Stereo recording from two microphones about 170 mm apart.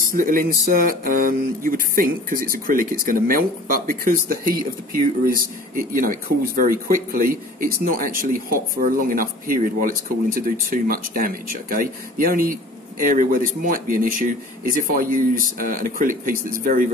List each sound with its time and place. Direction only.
0.1 s speech: 55° right (ahead or behind)